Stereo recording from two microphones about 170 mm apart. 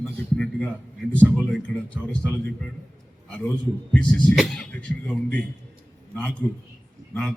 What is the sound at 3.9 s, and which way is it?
Speech, 5° left (ahead or behind).